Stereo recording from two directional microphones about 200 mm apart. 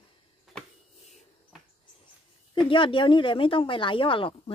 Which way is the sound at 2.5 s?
25° left (ahead or behind).